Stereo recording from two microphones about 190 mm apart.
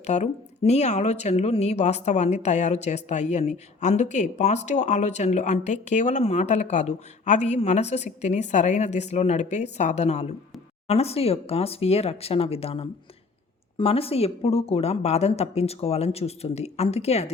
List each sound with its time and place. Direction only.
0.0 s speech: 35° left (ahead or behind)